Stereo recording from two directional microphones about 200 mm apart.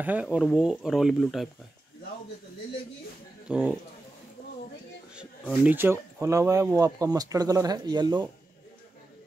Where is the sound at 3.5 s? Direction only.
5° right (ahead or behind).